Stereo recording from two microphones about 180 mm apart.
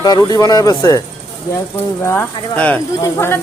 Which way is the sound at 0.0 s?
20° left (ahead or behind).